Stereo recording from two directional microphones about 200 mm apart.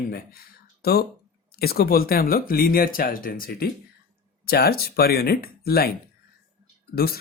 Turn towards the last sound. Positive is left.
turn(degrees=50)  # may be behind; listen again after turning